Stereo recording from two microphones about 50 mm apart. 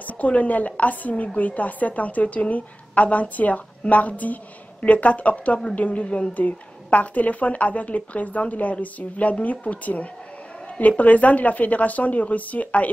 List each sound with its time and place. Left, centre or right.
0.0 s a woman's voice: left